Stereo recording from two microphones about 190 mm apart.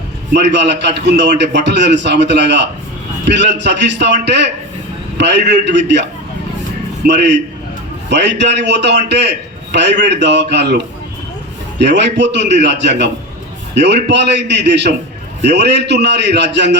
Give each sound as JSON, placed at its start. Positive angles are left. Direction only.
{"t": 0.3, "sound": "a man's voice", "side_deg": -65}
{"t": 7.1, "sound": "a man's voice", "side_deg": -65}